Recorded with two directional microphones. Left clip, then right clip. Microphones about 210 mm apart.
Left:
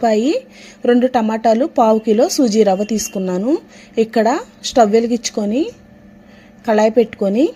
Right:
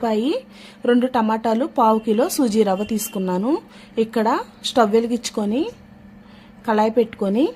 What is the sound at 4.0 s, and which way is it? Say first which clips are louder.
Speech: left 5 dB; 15° left (ahead or behind).